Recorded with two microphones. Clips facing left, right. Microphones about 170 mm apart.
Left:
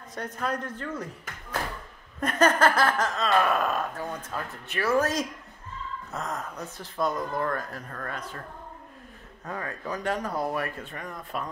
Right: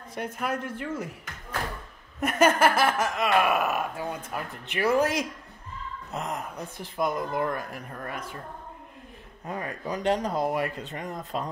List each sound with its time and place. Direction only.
0.1 s speech: 10° right (ahead or behind)
2.1 s speech: 10° right (ahead or behind)
9.5 s speech: 15° right (ahead or behind)